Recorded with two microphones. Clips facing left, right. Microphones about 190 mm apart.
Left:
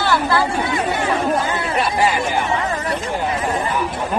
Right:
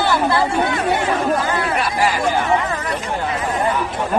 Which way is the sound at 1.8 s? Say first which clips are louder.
Left 5 dB; 25° left (ahead or behind).